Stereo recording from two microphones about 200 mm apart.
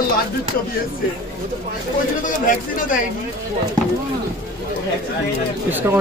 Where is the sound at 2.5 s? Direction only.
40° left (ahead or behind).